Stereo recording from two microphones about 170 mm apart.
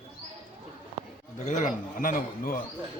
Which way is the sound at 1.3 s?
45° left (ahead or behind).